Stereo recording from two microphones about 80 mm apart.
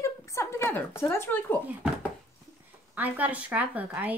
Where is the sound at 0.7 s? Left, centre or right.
Left.